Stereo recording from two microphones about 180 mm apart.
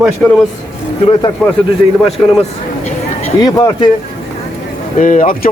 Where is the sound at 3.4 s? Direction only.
20° left (ahead or behind).